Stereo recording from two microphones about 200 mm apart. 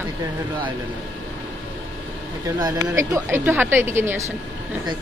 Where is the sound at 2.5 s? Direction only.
15° right (ahead or behind).